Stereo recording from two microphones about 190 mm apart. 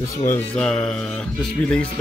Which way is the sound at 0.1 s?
15° left (ahead or behind).